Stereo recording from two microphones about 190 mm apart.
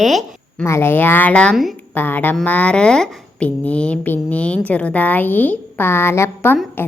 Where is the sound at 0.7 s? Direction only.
15° left (ahead or behind).